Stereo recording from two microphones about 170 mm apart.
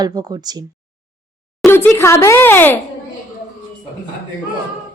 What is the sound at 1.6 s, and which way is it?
Speech, 15° left (ahead or behind).